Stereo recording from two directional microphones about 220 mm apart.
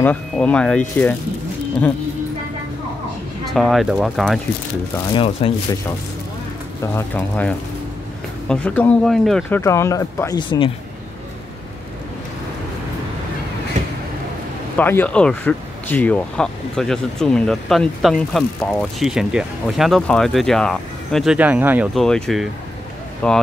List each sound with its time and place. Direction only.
0.0 s speech: 5° left (ahead or behind)
3.4 s speech: centre (ahead or behind)
5.1 s speech: 25° left (ahead or behind)
6.8 s speech: 10° left (ahead or behind)
9.6 s speech: 15° left (ahead or behind)
14.8 s speech: 10° left (ahead or behind)